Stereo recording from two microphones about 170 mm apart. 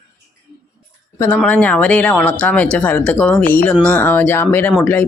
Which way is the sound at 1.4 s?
10° left (ahead or behind).